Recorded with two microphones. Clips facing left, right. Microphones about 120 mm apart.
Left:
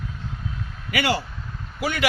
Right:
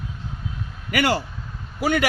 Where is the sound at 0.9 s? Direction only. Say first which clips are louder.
Right 2 dB; 45° right (ahead or behind).